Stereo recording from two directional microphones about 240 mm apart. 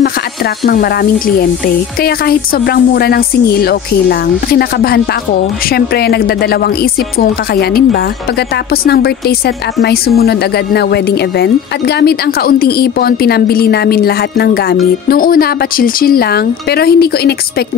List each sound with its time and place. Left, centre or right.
2.0 s speech: left
8.8 s a woman's voice: left